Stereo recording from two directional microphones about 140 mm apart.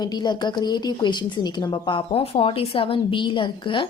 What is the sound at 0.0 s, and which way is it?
Speech, 30° left (ahead or behind).